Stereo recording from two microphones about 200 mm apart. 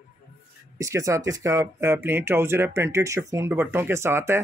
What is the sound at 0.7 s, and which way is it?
Speech, 15° right (ahead or behind).